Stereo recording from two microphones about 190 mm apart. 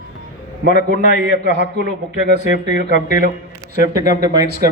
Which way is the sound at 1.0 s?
40° left (ahead or behind).